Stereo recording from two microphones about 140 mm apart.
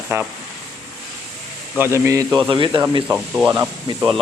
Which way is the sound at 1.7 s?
15° right (ahead or behind).